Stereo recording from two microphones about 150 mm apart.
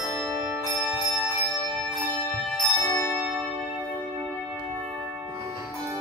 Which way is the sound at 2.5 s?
20° left (ahead or behind).